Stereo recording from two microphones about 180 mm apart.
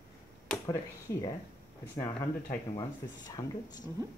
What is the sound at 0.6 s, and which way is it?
Speech, 20° left (ahead or behind).